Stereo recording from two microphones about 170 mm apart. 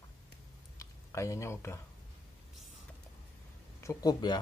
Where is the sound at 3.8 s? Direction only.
20° left (ahead or behind).